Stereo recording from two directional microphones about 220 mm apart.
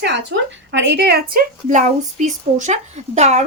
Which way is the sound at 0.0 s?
50° right (ahead or behind).